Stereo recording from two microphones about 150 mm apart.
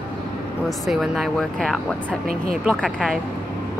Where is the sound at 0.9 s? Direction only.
Centre (ahead or behind).